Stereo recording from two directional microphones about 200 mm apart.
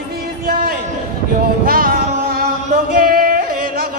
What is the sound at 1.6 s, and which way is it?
Music, 45° right (ahead or behind).